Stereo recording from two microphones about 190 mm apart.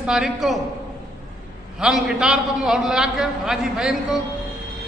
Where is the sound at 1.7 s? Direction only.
5° right (ahead or behind).